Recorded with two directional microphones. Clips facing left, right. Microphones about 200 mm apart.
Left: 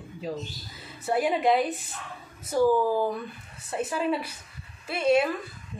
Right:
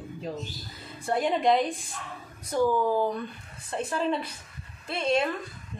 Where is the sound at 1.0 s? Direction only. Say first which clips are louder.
Left 1 dB; 5° left (ahead or behind).